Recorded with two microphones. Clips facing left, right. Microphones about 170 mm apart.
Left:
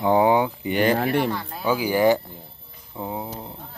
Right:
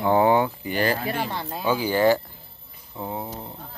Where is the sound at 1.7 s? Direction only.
10° left (ahead or behind).